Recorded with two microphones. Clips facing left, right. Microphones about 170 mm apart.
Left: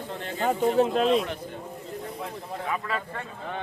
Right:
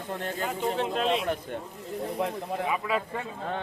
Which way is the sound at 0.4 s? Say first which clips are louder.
Left 8 dB; 40° left (ahead or behind).